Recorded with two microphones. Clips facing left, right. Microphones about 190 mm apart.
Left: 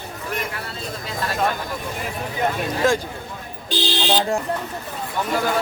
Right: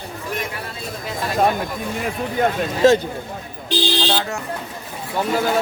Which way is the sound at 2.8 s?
25° right (ahead or behind).